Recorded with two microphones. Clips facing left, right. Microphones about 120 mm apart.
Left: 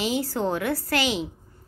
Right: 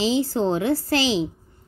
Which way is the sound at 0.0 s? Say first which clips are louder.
Right 4 dB; 25° right (ahead or behind).